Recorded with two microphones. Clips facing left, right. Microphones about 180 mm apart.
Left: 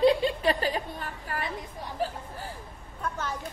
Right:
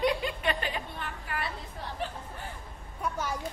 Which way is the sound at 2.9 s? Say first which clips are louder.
Even; 10° right (ahead or behind).